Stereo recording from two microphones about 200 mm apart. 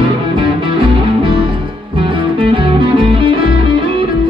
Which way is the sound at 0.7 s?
25° right (ahead or behind).